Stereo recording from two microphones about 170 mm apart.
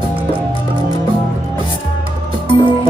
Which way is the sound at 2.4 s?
30° left (ahead or behind).